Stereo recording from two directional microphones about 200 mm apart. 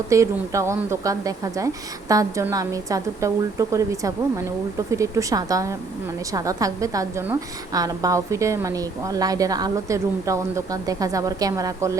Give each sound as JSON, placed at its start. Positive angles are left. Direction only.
{"t": 0.1, "sound": "a woman's voice", "side_deg": -15}